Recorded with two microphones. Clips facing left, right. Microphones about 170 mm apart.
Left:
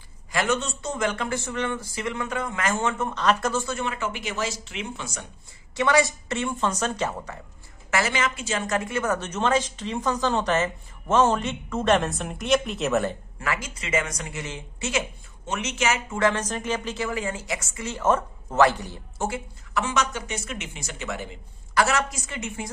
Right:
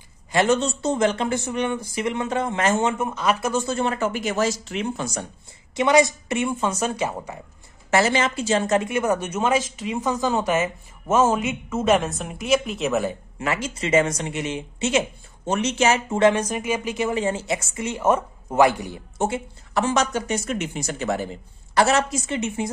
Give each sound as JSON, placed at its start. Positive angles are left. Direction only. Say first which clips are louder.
{"t": 0.3, "sound": "speech", "louder": "right 6 dB", "side_deg": -30}
{"t": 3.1, "sound": "a woman's voice", "louder": "right 1 dB", "side_deg": -10}
{"t": 3.6, "sound": "speech", "louder": "right 6 dB", "side_deg": -30}
{"t": 5.8, "sound": "a woman's voice", "louder": "right 4 dB", "side_deg": -20}
{"t": 7.9, "sound": "a woman's voice", "louder": "right 5 dB", "side_deg": -30}
{"t": 13.4, "sound": "speech", "louder": "right 5 dB", "side_deg": -25}
{"t": 16.3, "sound": "a woman's voice", "louder": "right 4 dB", "side_deg": -10}
{"t": 19.8, "sound": "speech", "louder": "right 5 dB", "side_deg": -35}